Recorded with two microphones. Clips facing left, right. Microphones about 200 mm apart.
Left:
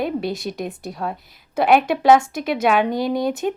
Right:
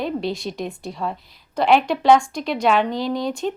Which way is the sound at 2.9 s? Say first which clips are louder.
Left 3 dB; 55° left (ahead or behind).